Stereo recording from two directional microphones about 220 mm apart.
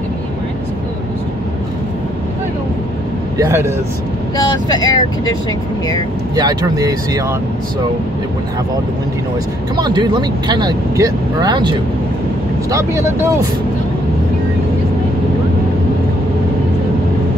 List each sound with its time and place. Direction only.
3.3 s speech: 15° right (ahead or behind)
4.4 s speech: 20° left (ahead or behind)
6.3 s speech: 15° right (ahead or behind)
9.8 s speech: 20° right (ahead or behind)
12.7 s speech: 10° right (ahead or behind)